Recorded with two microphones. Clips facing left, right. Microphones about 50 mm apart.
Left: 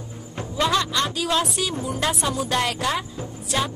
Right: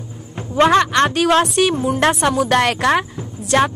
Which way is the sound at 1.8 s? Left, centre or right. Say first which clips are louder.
Right 9 dB; right.